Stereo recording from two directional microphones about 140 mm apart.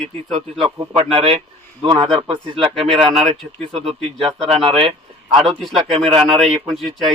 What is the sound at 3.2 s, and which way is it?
Speech, 40° right (ahead or behind).